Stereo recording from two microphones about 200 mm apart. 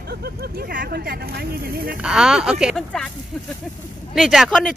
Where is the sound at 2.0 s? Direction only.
5° right (ahead or behind).